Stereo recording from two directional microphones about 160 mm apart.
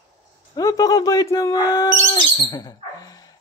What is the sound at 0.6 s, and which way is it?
Speech, 20° left (ahead or behind).